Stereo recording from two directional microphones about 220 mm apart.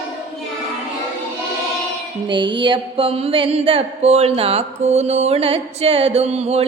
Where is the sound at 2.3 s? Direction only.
20° right (ahead or behind).